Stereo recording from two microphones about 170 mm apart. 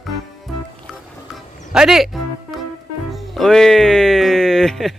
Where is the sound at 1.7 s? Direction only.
5° right (ahead or behind).